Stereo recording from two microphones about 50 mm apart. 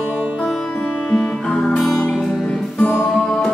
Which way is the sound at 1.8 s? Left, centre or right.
Centre.